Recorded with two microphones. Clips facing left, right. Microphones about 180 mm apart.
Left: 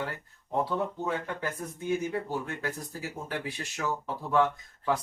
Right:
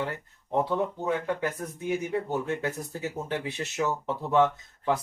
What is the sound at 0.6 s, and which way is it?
Speech, 20° right (ahead or behind).